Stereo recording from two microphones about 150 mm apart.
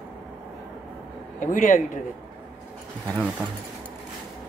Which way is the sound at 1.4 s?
60° left (ahead or behind).